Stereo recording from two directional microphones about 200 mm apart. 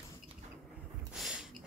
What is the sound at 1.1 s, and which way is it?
Snort, centre (ahead or behind).